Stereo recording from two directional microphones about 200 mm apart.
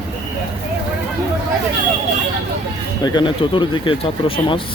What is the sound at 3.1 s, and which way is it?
Speech, 25° left (ahead or behind).